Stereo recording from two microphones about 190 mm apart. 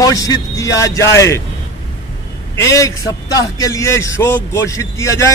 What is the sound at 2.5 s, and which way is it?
A man's voice, 15° left (ahead or behind).